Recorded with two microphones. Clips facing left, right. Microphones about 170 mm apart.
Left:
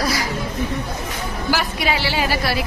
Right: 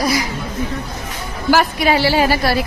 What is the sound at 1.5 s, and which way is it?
A woman's voice, 45° right (ahead or behind).